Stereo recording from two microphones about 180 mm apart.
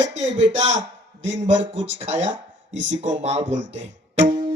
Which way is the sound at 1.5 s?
90° right.